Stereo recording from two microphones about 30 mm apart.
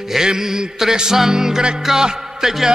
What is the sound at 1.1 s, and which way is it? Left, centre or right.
Music, centre.